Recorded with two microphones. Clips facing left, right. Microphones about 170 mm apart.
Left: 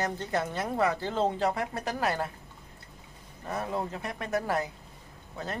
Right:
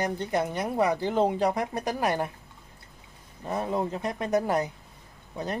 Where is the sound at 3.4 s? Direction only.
20° right (ahead or behind).